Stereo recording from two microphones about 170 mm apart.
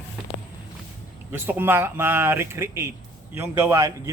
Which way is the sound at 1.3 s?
15° right (ahead or behind).